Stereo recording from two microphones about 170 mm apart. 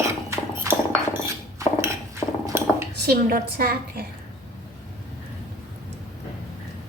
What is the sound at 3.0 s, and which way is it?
A woman's voice, 65° right (ahead or behind).